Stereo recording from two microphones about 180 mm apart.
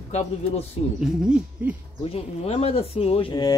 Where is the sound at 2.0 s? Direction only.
35° left (ahead or behind).